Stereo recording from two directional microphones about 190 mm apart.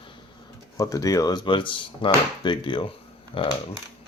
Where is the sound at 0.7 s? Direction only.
15° left (ahead or behind).